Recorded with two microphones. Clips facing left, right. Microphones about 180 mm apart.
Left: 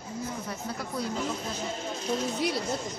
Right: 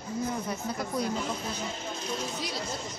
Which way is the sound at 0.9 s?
20° right (ahead or behind).